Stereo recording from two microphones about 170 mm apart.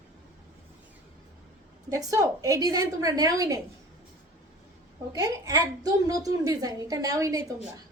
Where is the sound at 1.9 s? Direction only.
20° right (ahead or behind).